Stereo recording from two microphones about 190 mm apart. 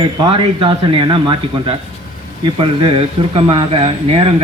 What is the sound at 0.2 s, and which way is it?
A man's voice, 25° right (ahead or behind).